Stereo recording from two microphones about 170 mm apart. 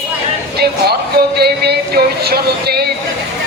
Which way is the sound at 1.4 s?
70° right (ahead or behind).